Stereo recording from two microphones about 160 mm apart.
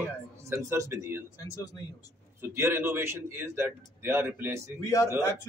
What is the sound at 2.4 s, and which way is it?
A man's voice, 15° right (ahead or behind).